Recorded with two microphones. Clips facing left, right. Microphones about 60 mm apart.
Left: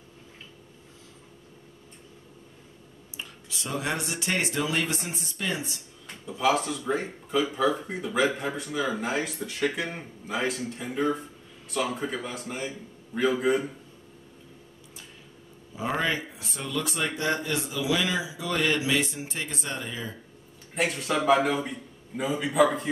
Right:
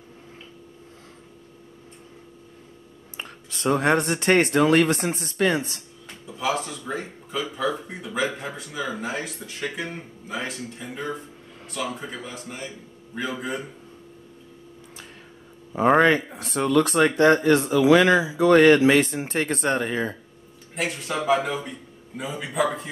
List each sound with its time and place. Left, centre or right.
3.2 s speech: right
6.2 s speech: centre
15.7 s speech: right
20.7 s speech: centre